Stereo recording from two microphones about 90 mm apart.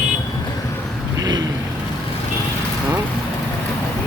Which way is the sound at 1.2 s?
45° right (ahead or behind).